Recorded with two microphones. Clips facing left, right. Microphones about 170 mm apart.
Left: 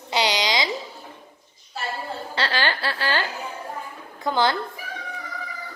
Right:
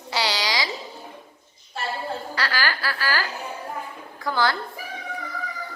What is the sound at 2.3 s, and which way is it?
Speech, 25° left (ahead or behind).